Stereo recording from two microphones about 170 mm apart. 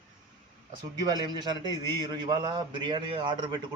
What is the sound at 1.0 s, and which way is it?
A man's voice, 25° right (ahead or behind).